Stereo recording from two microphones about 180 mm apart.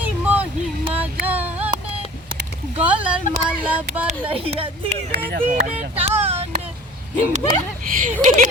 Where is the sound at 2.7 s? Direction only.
5° right (ahead or behind).